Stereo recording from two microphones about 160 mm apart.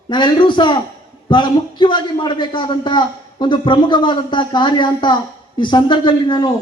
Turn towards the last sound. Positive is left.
turn(degrees=30)  # may be behind; listen again after turning